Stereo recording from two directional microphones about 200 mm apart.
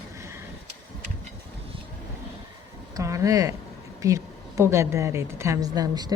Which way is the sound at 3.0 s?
15° right (ahead or behind).